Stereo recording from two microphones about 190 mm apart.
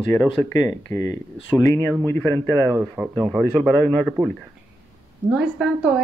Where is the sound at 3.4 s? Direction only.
10° left (ahead or behind).